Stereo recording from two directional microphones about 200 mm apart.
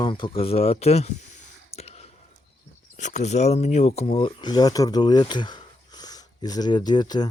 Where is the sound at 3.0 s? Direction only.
35° left (ahead or behind).